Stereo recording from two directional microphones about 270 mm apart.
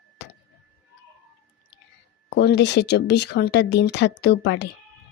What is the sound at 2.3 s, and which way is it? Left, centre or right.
Speech, left.